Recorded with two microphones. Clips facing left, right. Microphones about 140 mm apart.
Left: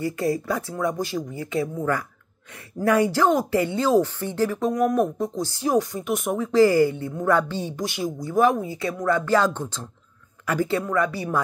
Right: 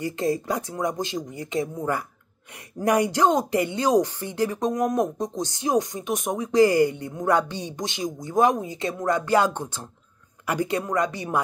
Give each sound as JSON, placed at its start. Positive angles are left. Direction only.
{"t": 0.0, "sound": "speech", "side_deg": -20}